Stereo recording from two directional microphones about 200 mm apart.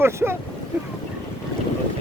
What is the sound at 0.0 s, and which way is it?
Speech, 10° right (ahead or behind).